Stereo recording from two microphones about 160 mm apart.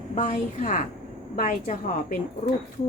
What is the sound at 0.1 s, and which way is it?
A woman's voice, 50° left (ahead or behind).